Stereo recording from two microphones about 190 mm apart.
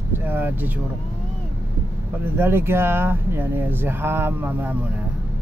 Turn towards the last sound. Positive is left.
turn(degrees=-10)  # may be behind; listen again after turning